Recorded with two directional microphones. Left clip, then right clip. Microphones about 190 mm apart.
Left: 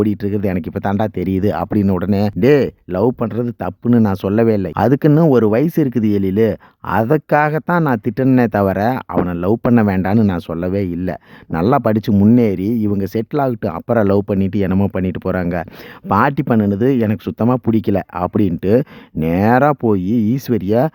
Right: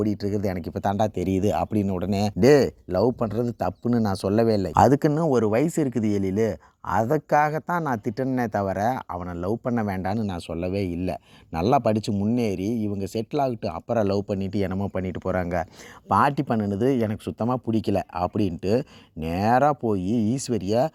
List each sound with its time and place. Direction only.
0.0 s speech: 30° left (ahead or behind)
12.5 s speech: 80° left
12.8 s speech: 35° left (ahead or behind)
20.5 s speech: 40° left (ahead or behind)